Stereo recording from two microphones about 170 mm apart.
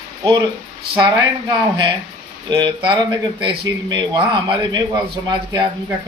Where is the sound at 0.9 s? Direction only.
25° right (ahead or behind).